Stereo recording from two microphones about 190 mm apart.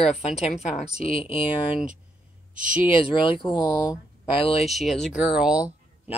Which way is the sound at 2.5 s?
45° right (ahead or behind).